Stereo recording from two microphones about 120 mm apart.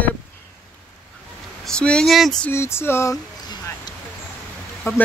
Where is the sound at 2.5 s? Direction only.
20° left (ahead or behind).